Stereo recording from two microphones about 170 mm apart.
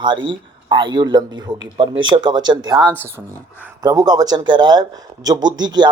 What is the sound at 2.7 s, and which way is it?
Speech, 5° left (ahead or behind).